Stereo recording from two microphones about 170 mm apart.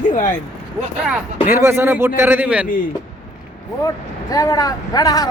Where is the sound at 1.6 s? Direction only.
15° right (ahead or behind).